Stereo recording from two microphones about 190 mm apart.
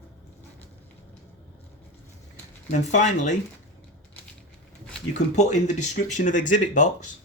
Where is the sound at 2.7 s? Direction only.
40° left (ahead or behind).